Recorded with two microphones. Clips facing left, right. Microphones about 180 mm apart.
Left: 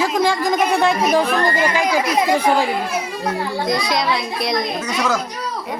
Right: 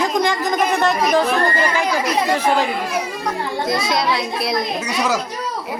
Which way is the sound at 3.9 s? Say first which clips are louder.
Even; centre (ahead or behind).